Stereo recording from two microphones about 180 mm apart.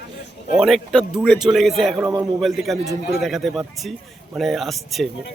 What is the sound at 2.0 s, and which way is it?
Speech, 15° right (ahead or behind).